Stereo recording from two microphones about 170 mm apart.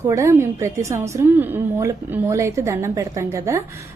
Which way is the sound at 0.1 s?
15° right (ahead or behind).